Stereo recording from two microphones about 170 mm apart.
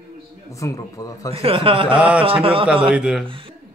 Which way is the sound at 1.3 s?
35° right (ahead or behind).